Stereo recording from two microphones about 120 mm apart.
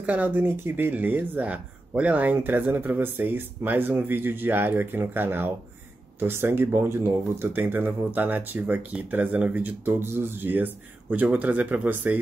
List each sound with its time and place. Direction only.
0.0 s speech: 10° right (ahead or behind)